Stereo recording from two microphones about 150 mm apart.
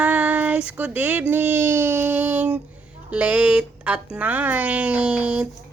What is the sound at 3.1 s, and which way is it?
Speech, 10° right (ahead or behind).